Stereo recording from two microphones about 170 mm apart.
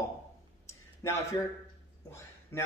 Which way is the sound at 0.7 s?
15° left (ahead or behind).